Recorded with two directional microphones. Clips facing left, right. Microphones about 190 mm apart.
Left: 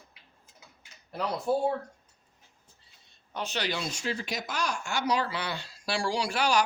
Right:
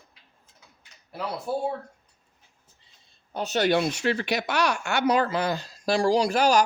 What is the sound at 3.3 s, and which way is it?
Speech, 40° right (ahead or behind).